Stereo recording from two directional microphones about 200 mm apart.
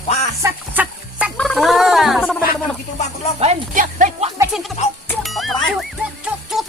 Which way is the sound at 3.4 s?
35° right (ahead or behind).